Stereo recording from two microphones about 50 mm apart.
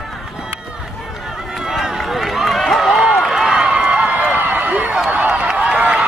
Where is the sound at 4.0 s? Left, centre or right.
Right.